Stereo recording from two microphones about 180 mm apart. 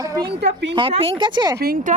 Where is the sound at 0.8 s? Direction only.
30° right (ahead or behind).